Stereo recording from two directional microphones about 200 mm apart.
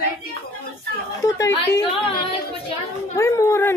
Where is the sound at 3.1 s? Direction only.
15° left (ahead or behind).